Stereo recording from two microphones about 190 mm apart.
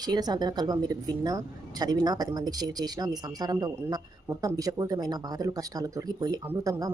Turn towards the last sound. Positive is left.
turn(degrees=-20)  # may be behind; listen again after turning